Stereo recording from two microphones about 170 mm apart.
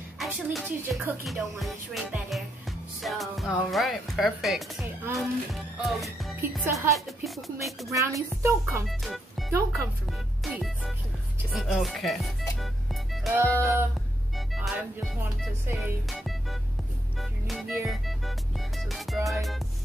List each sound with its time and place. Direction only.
0.2 s music: centre (ahead or behind)
3.0 s speech: centre (ahead or behind)
6.6 s speech: 15° right (ahead or behind)
6.9 s music: centre (ahead or behind)
7.9 s speech: 20° right (ahead or behind)
8.8 s music: centre (ahead or behind)
10.4 s music: centre (ahead or behind)
13.4 s speech: 15° right (ahead or behind)
14.5 s music: centre (ahead or behind)
17.2 s music: centre (ahead or behind)